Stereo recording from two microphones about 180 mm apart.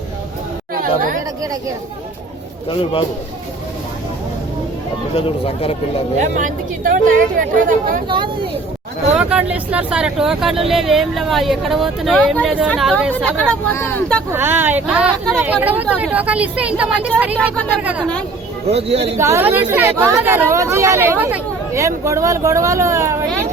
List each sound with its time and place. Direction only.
0.8 s speech: 50° right (ahead or behind)
5.1 s speech: 35° left (ahead or behind)
6.4 s speech: 50° right (ahead or behind)
8.0 s speech: 25° right (ahead or behind)
9.1 s speech: 5° right (ahead or behind)
14.3 s speech: 10° right (ahead or behind)
18.7 s speech: 35° right (ahead or behind)
19.1 s speech: 15° right (ahead or behind)